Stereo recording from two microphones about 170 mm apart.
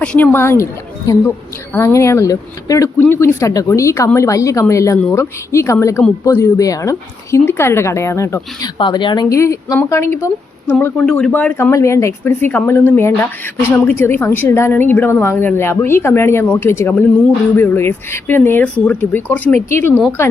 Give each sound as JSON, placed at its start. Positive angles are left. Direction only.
{"t": 0.0, "sound": "a woman's voice", "side_deg": 10}
{"t": 8.8, "sound": "a woman's voice", "side_deg": 30}